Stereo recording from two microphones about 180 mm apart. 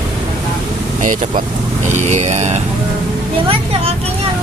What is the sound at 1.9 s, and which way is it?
Speech, 40° right (ahead or behind).